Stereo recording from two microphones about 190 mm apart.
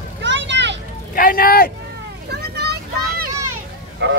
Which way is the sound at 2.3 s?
60° right (ahead or behind).